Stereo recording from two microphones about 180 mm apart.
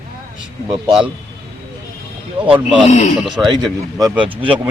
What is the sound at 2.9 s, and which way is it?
Speech, 40° left (ahead or behind).